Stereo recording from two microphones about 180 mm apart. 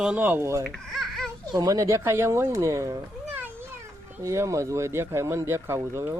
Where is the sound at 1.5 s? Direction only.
20° right (ahead or behind).